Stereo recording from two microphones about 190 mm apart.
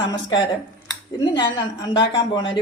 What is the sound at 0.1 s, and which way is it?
Speech, 20° left (ahead or behind).